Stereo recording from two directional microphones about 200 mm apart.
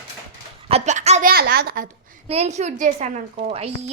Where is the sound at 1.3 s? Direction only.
50° right (ahead or behind).